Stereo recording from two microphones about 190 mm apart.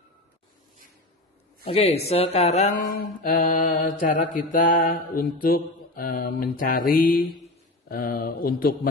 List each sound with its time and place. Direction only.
1.7 s speech: 35° left (ahead or behind); by 8.7 s 50° left (ahead or behind)